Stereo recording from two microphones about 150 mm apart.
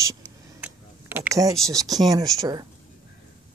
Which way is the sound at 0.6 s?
10° right (ahead or behind).